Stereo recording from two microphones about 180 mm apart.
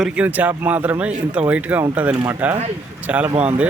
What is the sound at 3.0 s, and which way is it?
Speech, 10° right (ahead or behind).